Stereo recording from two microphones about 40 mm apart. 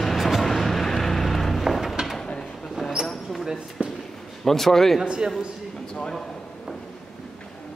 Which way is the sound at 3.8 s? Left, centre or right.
Right.